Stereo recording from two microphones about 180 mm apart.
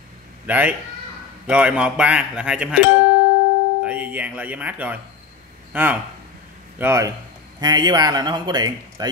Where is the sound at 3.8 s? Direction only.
10° right (ahead or behind).